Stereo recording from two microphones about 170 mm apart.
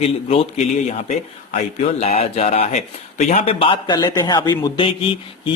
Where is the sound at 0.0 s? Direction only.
35° left (ahead or behind).